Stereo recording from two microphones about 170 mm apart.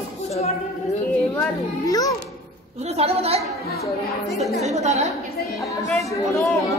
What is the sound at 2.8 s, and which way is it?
Speech, 35° right (ahead or behind).